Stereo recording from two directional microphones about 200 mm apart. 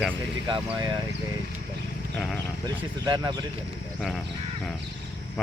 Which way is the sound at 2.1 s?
Centre (ahead or behind).